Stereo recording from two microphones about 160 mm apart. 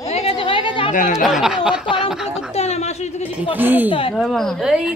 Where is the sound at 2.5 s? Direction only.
40° left (ahead or behind).